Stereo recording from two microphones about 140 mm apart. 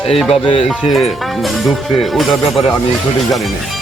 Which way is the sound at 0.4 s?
40° left (ahead or behind).